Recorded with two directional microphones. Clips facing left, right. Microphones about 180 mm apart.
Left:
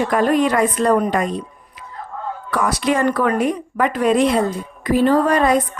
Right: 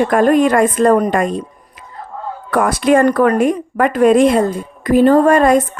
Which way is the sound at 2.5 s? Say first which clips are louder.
Right 7 dB; 50° right (ahead or behind).